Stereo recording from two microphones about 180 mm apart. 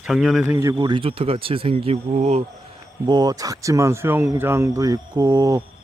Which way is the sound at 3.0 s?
20° right (ahead or behind).